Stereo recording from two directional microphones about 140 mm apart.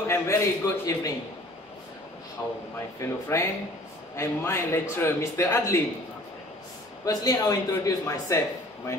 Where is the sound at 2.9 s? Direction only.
20° left (ahead or behind).